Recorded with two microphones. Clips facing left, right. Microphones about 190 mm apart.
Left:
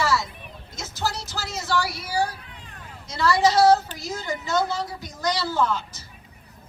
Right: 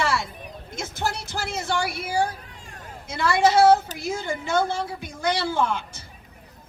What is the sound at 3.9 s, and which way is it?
Speech, 40° right (ahead or behind).